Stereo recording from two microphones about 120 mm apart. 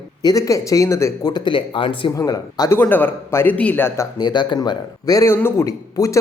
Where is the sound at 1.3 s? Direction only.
45° left (ahead or behind).